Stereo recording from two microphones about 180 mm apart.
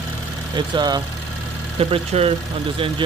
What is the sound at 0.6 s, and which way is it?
Speech, 25° right (ahead or behind).